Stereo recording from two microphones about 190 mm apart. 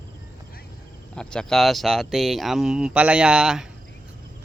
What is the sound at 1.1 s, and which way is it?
Speech, 5° left (ahead or behind).